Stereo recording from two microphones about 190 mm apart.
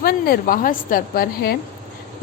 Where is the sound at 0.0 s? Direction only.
50° left (ahead or behind).